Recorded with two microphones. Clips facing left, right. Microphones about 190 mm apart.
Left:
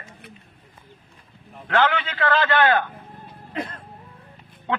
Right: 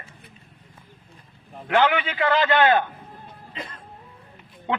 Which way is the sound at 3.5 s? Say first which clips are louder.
Left 8 dB; 60° left (ahead or behind).